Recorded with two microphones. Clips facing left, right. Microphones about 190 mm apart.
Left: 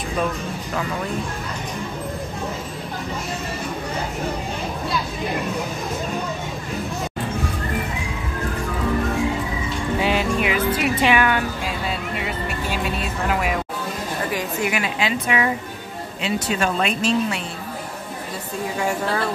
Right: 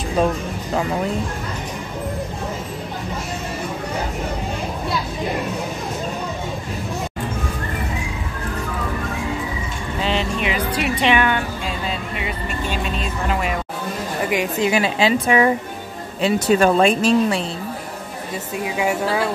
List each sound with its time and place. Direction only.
10.0 s speech: 5° left (ahead or behind)
12.6 s speech: 5° left (ahead or behind)
14.3 s a woman's voice: 20° right (ahead or behind); by 17.4 s 35° right (ahead or behind)
18.8 s speech: 5° right (ahead or behind)